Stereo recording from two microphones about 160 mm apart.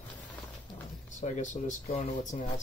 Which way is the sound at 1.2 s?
50° left (ahead or behind).